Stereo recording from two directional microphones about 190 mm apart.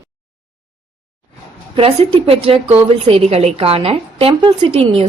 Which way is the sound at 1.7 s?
30° right (ahead or behind).